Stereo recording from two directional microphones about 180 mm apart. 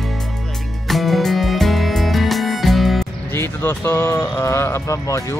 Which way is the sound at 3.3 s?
15° left (ahead or behind).